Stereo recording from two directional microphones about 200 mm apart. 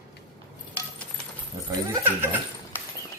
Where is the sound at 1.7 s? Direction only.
10° right (ahead or behind).